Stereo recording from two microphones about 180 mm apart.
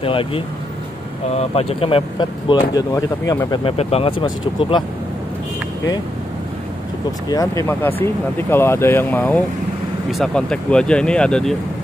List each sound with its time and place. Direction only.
0.0 s speech: 30° left (ahead or behind)
3.6 s speech: 35° left (ahead or behind)
7.2 s speech: 20° left (ahead or behind)